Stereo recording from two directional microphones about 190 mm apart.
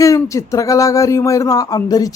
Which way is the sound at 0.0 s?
15° left (ahead or behind).